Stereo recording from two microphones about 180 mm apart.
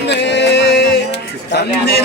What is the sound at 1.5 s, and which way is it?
Speech, 65° left (ahead or behind).